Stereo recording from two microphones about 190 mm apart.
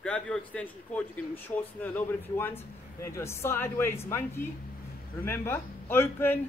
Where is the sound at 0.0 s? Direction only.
5° left (ahead or behind).